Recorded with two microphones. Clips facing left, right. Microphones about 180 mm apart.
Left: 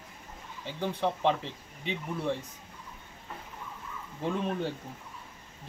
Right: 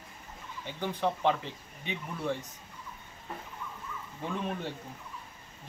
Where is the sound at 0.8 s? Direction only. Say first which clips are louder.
Left 1 dB; 25° left (ahead or behind).